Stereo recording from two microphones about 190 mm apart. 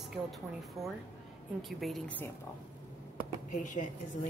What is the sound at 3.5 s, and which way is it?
Speech, 40° left (ahead or behind).